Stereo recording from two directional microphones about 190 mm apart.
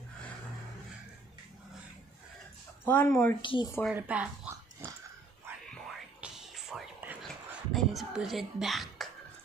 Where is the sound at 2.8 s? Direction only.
10° left (ahead or behind).